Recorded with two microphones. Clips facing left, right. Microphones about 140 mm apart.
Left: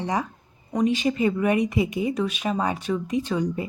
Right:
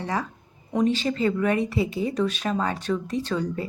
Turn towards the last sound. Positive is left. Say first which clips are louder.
# left 2 dB
turn(degrees=15)  # may be behind; listen again after turning